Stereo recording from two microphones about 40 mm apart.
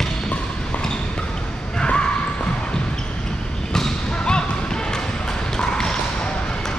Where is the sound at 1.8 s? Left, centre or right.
Left.